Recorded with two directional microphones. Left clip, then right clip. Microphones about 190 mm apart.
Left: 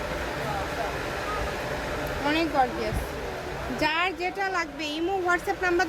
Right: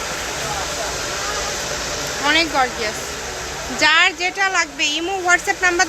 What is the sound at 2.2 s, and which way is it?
Speech, 10° right (ahead or behind).